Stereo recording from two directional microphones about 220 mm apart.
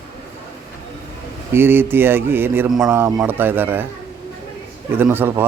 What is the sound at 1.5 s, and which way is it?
Speech, 10° right (ahead or behind).